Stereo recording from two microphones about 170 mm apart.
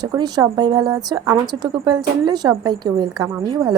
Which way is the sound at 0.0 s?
25° right (ahead or behind).